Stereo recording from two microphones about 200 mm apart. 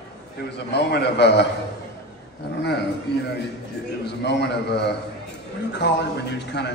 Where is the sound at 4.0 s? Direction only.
55° left (ahead or behind).